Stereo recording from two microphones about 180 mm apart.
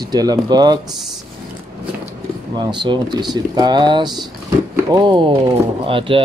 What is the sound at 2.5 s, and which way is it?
Speech, 25° right (ahead or behind).